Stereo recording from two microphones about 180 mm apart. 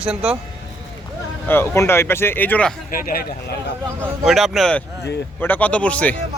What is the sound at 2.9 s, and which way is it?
Speech, 55° left (ahead or behind).